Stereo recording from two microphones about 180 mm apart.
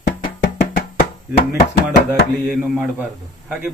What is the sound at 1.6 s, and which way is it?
Chopping, 55° left (ahead or behind).